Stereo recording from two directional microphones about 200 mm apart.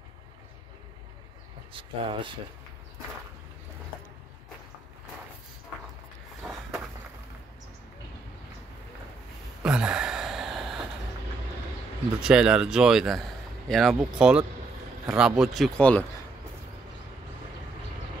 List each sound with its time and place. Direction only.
1.7 s speech: 25° right (ahead or behind)
9.6 s gasp: 5° right (ahead or behind)
12.2 s speech: 5° right (ahead or behind)